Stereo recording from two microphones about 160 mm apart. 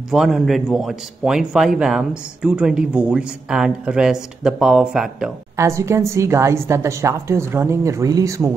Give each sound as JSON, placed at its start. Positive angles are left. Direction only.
{"t": 0.1, "sound": "a man's voice", "side_deg": 0}
{"t": 5.6, "sound": "a woman's voice", "side_deg": -20}